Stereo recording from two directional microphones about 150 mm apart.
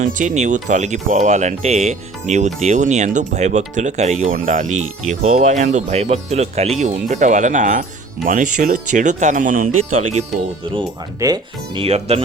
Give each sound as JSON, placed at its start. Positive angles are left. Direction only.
{"t": 0.0, "sound": "speech", "side_deg": -55}
{"t": 8.2, "sound": "speech", "side_deg": -65}
{"t": 11.2, "sound": "speech", "side_deg": -30}